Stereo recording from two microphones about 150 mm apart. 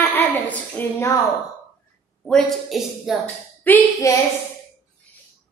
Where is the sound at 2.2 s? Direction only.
5° left (ahead or behind).